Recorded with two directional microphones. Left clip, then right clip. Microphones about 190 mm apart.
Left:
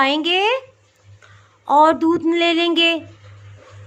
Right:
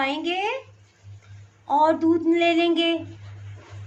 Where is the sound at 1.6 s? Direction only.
40° left (ahead or behind).